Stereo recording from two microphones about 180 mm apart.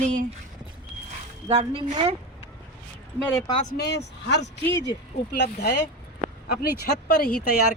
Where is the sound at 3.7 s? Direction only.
65° left (ahead or behind).